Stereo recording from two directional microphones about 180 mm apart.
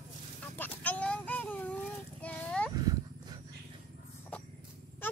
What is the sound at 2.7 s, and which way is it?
Horse, 20° right (ahead or behind).